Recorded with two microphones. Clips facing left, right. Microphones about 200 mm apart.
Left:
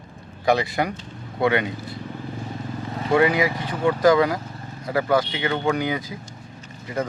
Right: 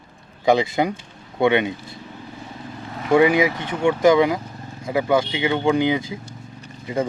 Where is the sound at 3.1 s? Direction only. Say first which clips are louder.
Right 3 dB; 20° right (ahead or behind).